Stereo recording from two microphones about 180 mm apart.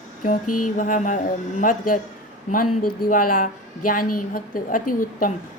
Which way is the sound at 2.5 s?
50° left (ahead or behind).